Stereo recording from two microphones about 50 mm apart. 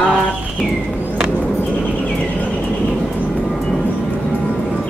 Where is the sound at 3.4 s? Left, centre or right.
Centre.